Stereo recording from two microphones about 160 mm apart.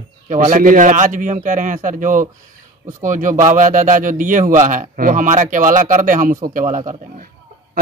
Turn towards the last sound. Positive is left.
turn(degrees=-55)  # may be behind; listen again after turning